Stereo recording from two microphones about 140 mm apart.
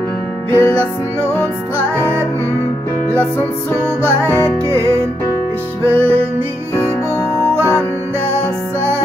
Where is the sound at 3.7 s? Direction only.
15° right (ahead or behind).